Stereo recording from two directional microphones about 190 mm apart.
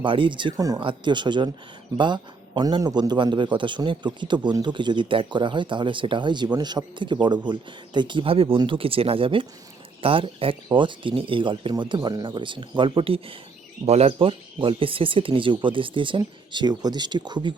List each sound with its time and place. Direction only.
0.0 s a man's voice: 25° right (ahead or behind)